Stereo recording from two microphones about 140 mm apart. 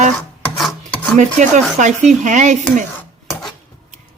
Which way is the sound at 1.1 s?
60° right (ahead or behind).